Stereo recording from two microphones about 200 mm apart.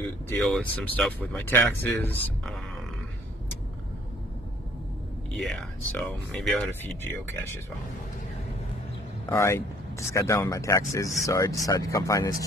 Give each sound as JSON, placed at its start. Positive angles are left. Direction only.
{"t": 0.4, "sound": "speech", "side_deg": 5}
{"t": 5.4, "sound": "speech", "side_deg": 5}
{"t": 9.2, "sound": "speech", "side_deg": 10}